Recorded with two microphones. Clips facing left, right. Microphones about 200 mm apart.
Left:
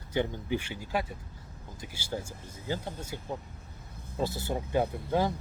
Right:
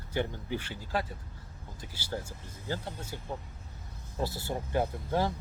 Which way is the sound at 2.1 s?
15° left (ahead or behind).